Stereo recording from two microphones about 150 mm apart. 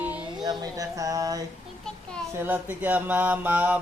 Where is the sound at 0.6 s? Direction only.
25° right (ahead or behind).